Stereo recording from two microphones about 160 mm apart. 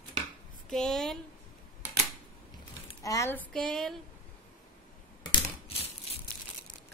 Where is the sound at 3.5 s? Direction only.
5° left (ahead or behind).